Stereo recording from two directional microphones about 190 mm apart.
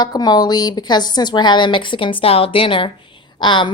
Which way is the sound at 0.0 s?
20° left (ahead or behind).